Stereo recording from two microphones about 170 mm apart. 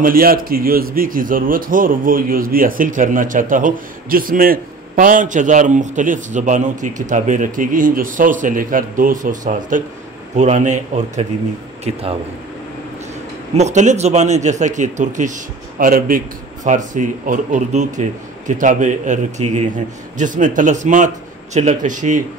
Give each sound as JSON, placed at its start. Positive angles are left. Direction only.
{"t": 0.0, "sound": "speech", "side_deg": -60}
{"t": 13.6, "sound": "speech", "side_deg": -45}